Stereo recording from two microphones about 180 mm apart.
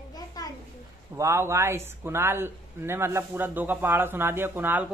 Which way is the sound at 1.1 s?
15° right (ahead or behind).